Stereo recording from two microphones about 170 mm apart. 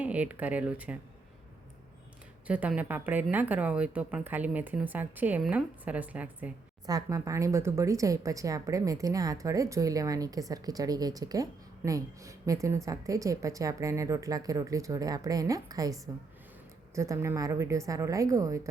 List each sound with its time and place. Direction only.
0.0 s speech: 10° right (ahead or behind)
2.5 s speech: 10° right (ahead or behind)
6.8 s speech: 20° right (ahead or behind)